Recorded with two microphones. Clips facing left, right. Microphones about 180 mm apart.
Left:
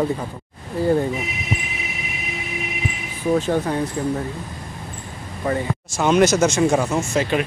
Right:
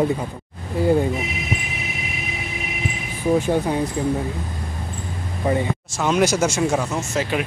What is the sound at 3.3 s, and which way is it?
Speech, 10° right (ahead or behind).